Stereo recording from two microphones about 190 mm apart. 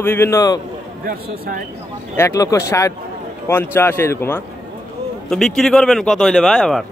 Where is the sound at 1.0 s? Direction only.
45° right (ahead or behind).